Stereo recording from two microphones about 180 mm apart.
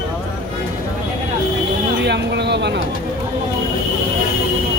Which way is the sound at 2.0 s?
70° right (ahead or behind).